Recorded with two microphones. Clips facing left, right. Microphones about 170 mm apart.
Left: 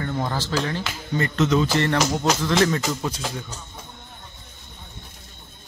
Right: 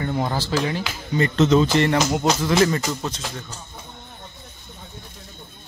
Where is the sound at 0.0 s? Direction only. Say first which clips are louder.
Right 2 dB; 15° right (ahead or behind).